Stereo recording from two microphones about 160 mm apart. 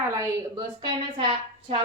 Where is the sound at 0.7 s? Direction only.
40° right (ahead or behind).